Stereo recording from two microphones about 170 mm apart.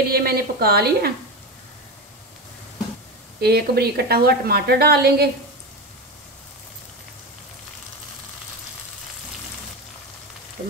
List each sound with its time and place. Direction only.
0.0 s a woman's voice: 65° right (ahead or behind)
3.3 s a woman's voice: 70° right (ahead or behind)